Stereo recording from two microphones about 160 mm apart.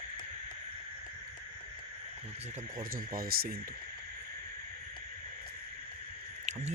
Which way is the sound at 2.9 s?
65° right (ahead or behind).